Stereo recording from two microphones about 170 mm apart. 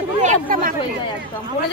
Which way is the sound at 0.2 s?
50° right (ahead or behind).